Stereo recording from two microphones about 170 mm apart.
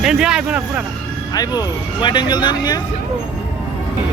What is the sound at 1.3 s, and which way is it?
Speech, 20° left (ahead or behind).